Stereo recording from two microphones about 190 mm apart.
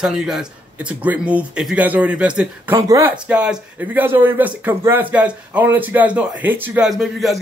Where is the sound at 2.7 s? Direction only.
15° right (ahead or behind).